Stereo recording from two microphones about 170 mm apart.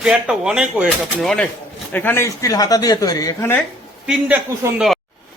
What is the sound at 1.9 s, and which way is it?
Speech, 15° left (ahead or behind).